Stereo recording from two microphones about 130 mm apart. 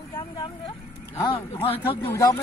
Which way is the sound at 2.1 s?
25° left (ahead or behind).